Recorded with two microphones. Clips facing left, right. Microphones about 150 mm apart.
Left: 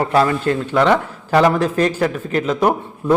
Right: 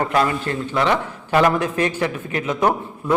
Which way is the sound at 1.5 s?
30° left (ahead or behind).